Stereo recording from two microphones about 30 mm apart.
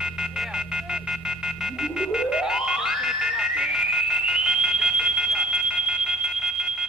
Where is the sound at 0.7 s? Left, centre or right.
Right.